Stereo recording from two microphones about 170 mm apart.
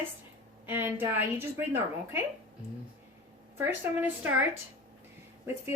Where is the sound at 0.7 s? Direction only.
10° right (ahead or behind).